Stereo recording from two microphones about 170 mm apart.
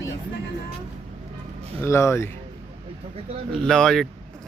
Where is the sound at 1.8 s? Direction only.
15° left (ahead or behind).